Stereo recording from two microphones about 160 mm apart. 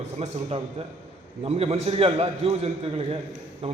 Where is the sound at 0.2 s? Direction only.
40° right (ahead or behind).